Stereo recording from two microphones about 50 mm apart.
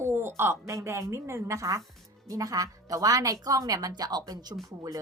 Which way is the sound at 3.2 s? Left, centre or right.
Right.